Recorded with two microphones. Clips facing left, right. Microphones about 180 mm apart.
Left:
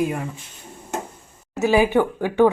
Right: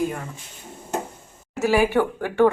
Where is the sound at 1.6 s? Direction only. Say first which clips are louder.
Left 2 dB; 20° left (ahead or behind).